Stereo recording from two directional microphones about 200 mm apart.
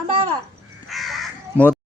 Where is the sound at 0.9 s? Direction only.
Centre (ahead or behind).